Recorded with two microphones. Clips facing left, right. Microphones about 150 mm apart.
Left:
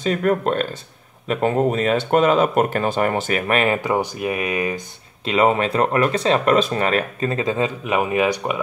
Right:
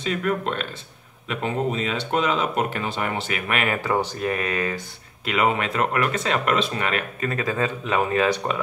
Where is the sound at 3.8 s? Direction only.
15° left (ahead or behind).